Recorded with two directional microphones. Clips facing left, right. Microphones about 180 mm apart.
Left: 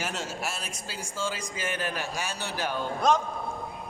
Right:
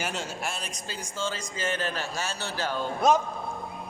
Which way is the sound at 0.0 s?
Centre (ahead or behind).